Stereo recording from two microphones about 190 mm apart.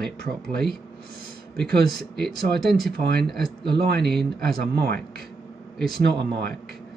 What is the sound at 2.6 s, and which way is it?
Speech, centre (ahead or behind).